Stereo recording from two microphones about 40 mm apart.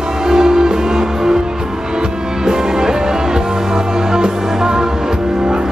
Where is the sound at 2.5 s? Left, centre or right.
Centre.